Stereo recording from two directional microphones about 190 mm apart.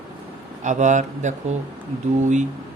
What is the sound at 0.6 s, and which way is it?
Speech, 40° right (ahead or behind).